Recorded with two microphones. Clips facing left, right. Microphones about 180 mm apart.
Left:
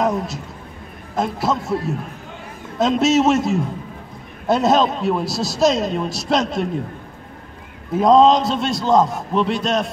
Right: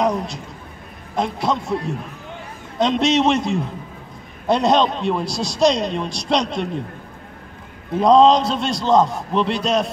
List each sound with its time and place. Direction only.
0.0 s a man's voice: 5° left (ahead or behind)
7.9 s a man's voice: centre (ahead or behind)